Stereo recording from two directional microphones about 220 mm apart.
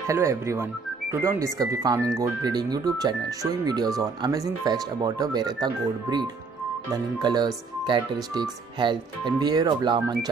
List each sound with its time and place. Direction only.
0.0 s speech: 15° right (ahead or behind)